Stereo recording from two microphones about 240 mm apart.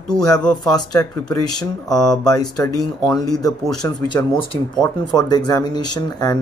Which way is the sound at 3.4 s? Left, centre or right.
Centre.